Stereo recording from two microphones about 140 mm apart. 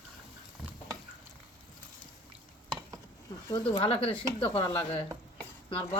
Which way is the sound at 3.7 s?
40° left (ahead or behind).